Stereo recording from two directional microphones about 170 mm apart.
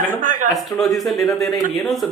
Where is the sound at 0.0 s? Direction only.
50° right (ahead or behind).